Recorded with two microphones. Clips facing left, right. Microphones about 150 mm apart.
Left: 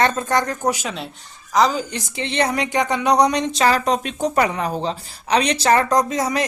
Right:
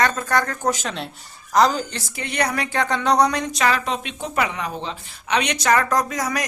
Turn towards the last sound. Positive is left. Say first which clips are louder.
# left 4 dB
turn(degrees=25)  # may be behind; listen again after turning